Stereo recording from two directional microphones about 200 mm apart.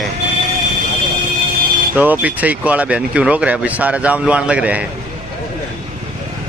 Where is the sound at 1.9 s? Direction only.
10° right (ahead or behind).